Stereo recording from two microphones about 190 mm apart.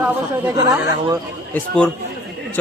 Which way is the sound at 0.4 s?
20° right (ahead or behind).